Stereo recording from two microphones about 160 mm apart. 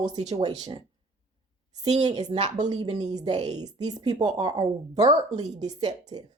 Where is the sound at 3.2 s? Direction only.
45° right (ahead or behind).